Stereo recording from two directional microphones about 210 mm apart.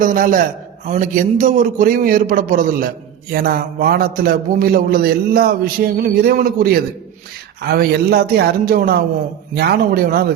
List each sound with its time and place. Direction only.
0.0 s a man's voice: 40° right (ahead or behind)